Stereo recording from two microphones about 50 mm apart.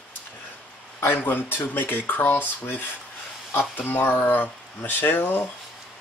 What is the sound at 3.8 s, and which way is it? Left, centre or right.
Speech, left.